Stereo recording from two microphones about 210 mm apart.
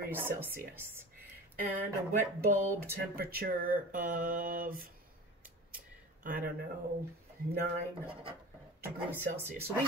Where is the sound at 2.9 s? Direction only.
45° right (ahead or behind).